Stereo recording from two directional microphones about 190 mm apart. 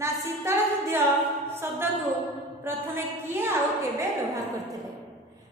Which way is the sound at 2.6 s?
10° right (ahead or behind).